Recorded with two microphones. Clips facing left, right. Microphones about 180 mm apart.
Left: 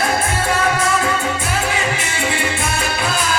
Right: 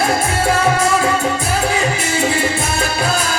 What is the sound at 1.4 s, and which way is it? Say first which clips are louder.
Music: right 3 dB; 40° right (ahead or behind).